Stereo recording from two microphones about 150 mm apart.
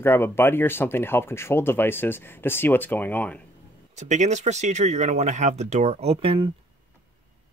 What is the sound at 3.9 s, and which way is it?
Speech, 50° right (ahead or behind).